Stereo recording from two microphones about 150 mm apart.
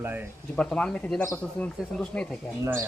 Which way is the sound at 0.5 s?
5° left (ahead or behind).